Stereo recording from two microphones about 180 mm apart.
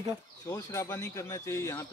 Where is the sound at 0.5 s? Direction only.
15° left (ahead or behind).